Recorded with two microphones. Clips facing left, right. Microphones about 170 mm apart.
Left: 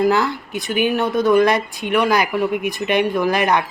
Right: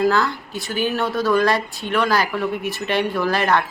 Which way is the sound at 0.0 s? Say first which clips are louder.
Left 2 dB; 20° left (ahead or behind).